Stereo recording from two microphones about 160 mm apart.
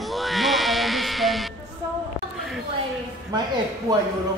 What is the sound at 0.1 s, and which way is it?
Music, centre (ahead or behind).